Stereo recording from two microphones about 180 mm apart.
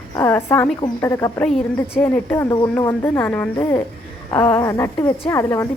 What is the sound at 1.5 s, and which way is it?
A woman's voice, 5° left (ahead or behind).